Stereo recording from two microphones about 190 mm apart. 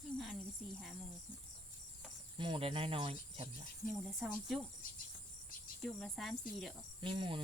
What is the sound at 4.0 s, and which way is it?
Speech, centre (ahead or behind).